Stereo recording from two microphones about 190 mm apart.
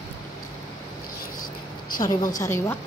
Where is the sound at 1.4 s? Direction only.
45° left (ahead or behind).